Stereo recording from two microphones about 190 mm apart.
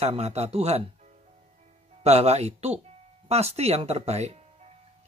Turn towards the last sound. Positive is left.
turn(degrees=-35)  # may be behind; listen again after turning